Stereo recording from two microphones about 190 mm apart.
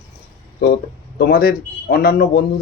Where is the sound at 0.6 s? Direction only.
65° left (ahead or behind).